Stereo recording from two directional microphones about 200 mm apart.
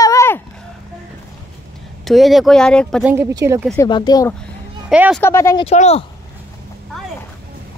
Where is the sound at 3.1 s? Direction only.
10° right (ahead or behind).